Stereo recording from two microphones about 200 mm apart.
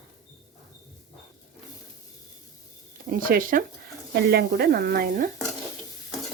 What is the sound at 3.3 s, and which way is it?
Speech, 45° right (ahead or behind).